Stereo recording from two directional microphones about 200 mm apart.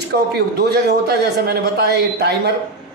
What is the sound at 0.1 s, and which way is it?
Speech, 50° right (ahead or behind).